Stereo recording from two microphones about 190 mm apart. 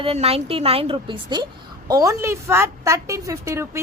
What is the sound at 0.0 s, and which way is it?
A woman's voice, 30° right (ahead or behind).